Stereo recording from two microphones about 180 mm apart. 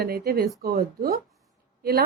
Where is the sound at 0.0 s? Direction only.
55° right (ahead or behind).